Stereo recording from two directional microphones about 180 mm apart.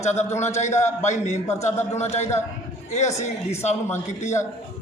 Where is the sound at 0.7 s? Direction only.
15° left (ahead or behind).